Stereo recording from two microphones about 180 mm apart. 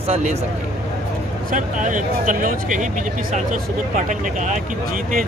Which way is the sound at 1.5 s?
45° right (ahead or behind).